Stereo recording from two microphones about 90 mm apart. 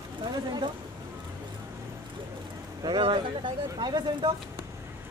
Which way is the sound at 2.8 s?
60° right (ahead or behind).